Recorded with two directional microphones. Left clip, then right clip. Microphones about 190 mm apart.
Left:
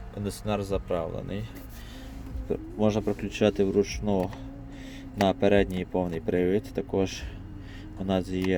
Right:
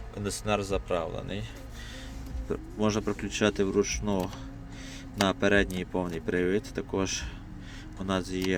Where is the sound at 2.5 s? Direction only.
5° left (ahead or behind).